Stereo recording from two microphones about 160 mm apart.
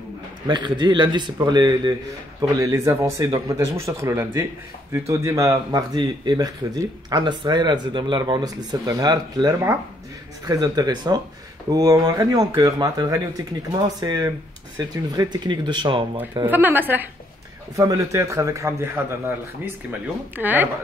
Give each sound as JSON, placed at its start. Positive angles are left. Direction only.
{"t": 0.5, "sound": "speech", "side_deg": -25}
{"t": 2.6, "sound": "speech", "side_deg": -15}
{"t": 16.4, "sound": "speech", "side_deg": -10}